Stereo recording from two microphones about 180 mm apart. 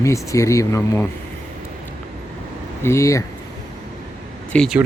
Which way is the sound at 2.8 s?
15° left (ahead or behind).